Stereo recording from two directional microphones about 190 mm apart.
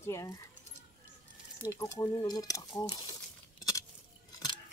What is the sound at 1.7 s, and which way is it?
Speech, 15° left (ahead or behind).